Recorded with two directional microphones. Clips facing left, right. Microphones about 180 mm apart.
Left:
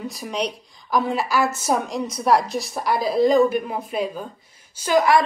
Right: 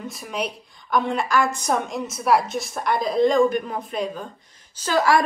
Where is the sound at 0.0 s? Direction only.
Centre (ahead or behind).